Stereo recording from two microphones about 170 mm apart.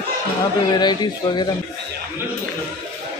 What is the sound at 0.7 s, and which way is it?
Speech, 25° left (ahead or behind).